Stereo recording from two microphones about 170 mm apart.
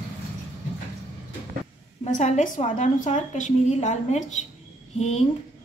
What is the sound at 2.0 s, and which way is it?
A woman's voice, 40° left (ahead or behind).